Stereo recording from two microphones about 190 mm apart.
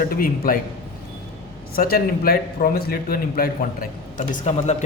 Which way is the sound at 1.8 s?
50° left (ahead or behind).